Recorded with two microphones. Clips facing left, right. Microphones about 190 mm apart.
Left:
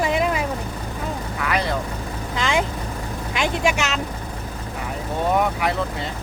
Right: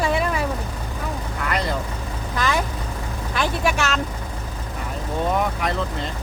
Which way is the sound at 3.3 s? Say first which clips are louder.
Left 1 dB; 15° left (ahead or behind).